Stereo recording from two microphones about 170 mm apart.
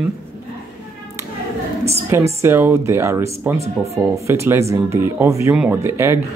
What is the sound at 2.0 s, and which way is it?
Speech, 15° right (ahead or behind).